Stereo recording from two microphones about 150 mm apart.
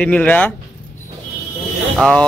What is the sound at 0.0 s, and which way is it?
Speech, 10° left (ahead or behind).